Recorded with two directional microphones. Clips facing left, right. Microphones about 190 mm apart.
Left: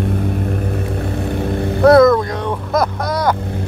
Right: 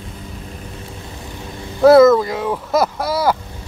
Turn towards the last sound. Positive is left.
turn(degrees=-5)  # may be behind; listen again after turning